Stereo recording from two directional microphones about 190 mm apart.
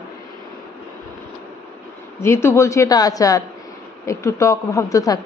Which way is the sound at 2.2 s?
15° left (ahead or behind).